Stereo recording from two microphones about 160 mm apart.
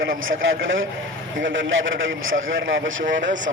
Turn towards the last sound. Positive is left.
turn(degrees=-55)  # may be behind; listen again after turning